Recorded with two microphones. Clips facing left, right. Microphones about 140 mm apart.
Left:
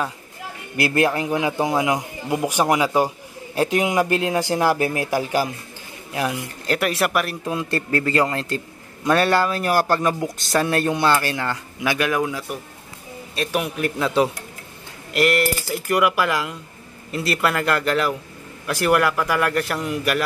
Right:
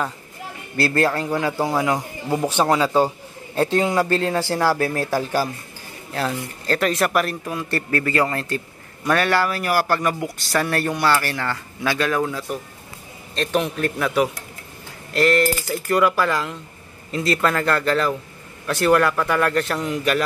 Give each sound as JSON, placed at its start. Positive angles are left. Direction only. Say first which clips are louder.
{"t": 0.7, "sound": "speech", "louder": "even", "side_deg": 15}
{"t": 7.4, "sound": "a man's voice", "louder": "left 2 dB", "side_deg": 20}
{"t": 15.1, "sound": "speech", "louder": "right 1 dB", "side_deg": 15}